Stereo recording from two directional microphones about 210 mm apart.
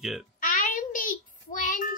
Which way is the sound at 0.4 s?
40° left (ahead or behind).